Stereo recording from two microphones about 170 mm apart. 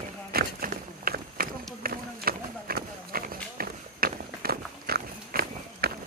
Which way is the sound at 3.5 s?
60° right (ahead or behind).